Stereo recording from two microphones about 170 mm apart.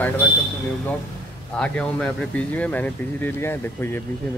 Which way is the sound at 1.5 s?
5° left (ahead or behind).